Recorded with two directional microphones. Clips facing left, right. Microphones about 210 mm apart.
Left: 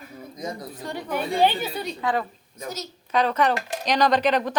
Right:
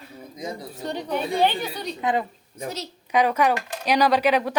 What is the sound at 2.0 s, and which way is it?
Speech, 20° right (ahead or behind).